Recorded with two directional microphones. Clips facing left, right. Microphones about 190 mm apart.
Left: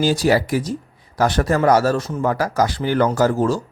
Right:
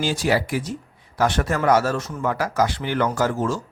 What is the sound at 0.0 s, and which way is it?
Speech, 40° left (ahead or behind).